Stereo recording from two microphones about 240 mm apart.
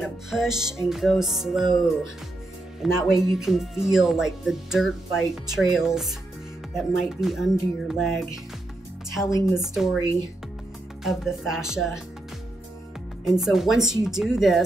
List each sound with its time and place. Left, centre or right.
0.0 s speech: centre
0.6 s music: centre
0.8 s speech: centre
11.1 s speech: centre
13.2 s speech: centre